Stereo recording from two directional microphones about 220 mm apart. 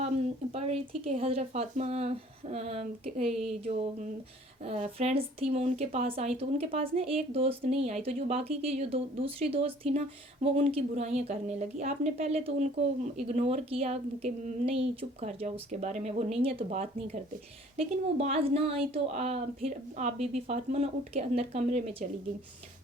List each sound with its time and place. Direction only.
0.5 s speech: 25° right (ahead or behind)
4.6 s speech: 30° right (ahead or behind)